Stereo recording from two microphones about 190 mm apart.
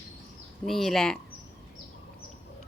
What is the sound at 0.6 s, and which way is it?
Speech, centre (ahead or behind).